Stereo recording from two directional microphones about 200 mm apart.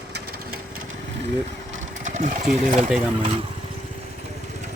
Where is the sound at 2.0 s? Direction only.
40° right (ahead or behind).